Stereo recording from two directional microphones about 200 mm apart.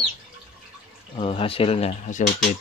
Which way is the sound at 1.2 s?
30° left (ahead or behind).